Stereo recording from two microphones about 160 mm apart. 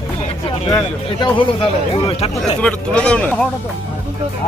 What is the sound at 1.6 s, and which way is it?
Speech, 30° left (ahead or behind).